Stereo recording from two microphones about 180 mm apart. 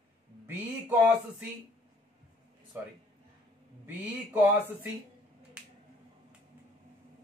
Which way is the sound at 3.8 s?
10° right (ahead or behind).